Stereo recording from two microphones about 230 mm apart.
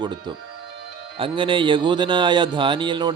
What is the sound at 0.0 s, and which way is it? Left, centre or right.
Speech, centre.